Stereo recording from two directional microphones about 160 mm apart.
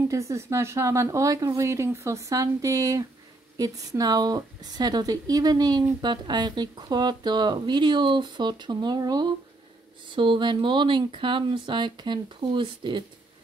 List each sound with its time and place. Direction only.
0.1 s speech: 20° right (ahead or behind)